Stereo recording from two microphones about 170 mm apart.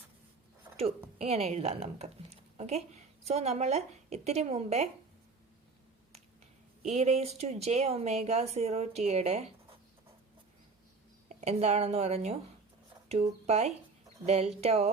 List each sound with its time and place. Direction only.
1.2 s a woman's voice: 35° right (ahead or behind)
6.8 s speech: 40° right (ahead or behind)
11.3 s speech: 40° right (ahead or behind)